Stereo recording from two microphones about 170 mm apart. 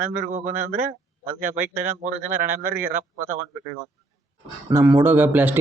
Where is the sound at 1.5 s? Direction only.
10° right (ahead or behind).